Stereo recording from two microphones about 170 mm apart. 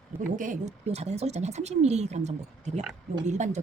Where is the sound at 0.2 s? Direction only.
50° right (ahead or behind).